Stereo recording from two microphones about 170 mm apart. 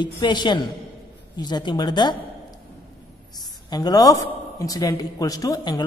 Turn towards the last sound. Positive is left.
turn(degrees=25)  # may be behind; listen again after turning